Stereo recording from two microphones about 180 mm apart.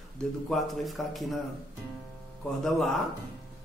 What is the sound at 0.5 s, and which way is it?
Speech, centre (ahead or behind).